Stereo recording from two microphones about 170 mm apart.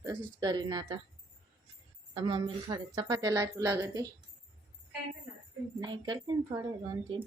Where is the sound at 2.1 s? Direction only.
30° right (ahead or behind).